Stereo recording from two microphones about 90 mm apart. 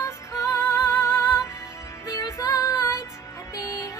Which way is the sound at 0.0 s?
40° left (ahead or behind).